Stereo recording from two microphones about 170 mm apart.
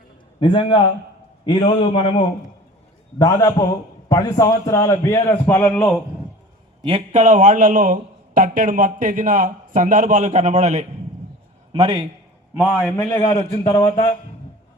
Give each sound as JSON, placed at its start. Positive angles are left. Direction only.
{"t": 0.3, "sound": "a man's voice", "side_deg": 30}
{"t": 3.2, "sound": "a man's voice", "side_deg": 20}
{"t": 6.8, "sound": "a man's voice", "side_deg": -35}
{"t": 11.7, "sound": "a man's voice", "side_deg": -30}
{"t": 13.1, "sound": "a man's voice", "side_deg": 20}